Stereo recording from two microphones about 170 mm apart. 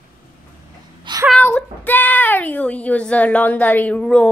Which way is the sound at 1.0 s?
25° right (ahead or behind).